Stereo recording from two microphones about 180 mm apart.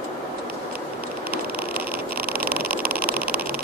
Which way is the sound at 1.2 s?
55° right (ahead or behind).